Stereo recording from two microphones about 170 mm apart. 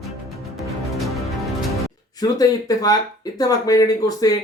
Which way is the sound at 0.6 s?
Centre (ahead or behind).